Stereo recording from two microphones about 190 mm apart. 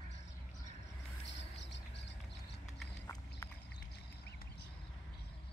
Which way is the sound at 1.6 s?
65° left (ahead or behind).